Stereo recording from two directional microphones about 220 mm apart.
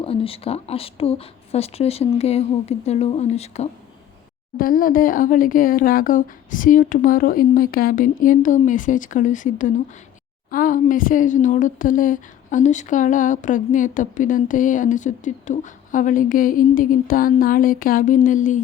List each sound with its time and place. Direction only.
0.0 s speech: 25° left (ahead or behind)
4.5 s a woman's voice: 40° left (ahead or behind)